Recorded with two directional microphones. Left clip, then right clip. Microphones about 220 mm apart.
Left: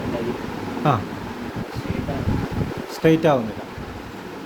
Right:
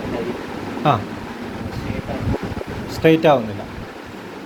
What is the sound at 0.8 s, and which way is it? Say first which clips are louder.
Speech: right 3 dB; 15° left (ahead or behind).